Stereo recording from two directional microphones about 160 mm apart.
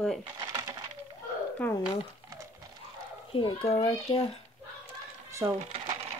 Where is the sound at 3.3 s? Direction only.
35° left (ahead or behind).